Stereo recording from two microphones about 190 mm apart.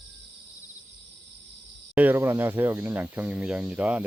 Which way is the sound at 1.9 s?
10° right (ahead or behind).